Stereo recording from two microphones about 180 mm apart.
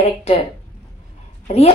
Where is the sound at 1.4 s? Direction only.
35° left (ahead or behind).